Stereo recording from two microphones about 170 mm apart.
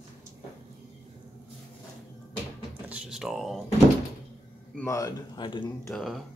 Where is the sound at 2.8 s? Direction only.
5° right (ahead or behind).